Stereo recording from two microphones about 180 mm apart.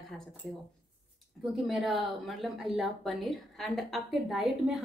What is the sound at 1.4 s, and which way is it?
Speech, centre (ahead or behind).